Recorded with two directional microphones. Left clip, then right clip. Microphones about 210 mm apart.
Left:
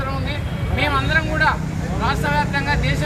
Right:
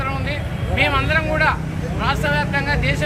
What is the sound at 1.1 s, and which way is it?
Speech, centre (ahead or behind).